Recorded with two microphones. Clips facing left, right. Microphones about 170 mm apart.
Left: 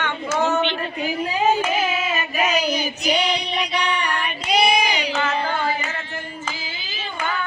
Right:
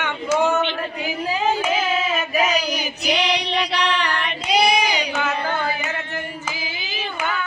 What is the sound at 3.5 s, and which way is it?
Female singing, 70° right (ahead or behind).